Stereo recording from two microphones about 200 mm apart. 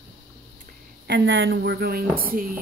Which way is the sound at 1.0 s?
65° right (ahead or behind).